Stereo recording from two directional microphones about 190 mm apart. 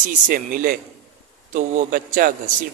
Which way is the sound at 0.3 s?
50° right (ahead or behind).